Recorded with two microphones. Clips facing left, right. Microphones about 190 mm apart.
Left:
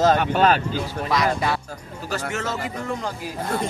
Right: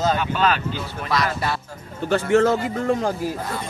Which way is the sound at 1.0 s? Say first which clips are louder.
Left 1 dB; 15° left (ahead or behind).